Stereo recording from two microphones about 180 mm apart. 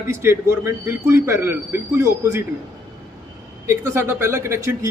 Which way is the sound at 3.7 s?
15° right (ahead or behind).